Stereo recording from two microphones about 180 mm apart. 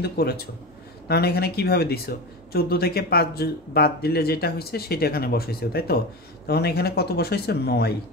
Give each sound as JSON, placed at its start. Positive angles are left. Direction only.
{"t": 0.0, "sound": "speech", "side_deg": 60}